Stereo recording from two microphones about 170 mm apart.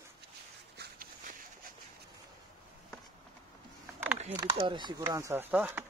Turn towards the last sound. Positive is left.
turn(degrees=-10)  # may be behind; listen again after turning